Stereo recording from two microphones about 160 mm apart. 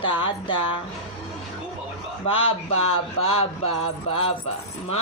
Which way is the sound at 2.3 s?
35° left (ahead or behind).